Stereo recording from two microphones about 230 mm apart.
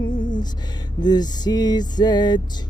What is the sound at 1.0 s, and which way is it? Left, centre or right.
Music, centre.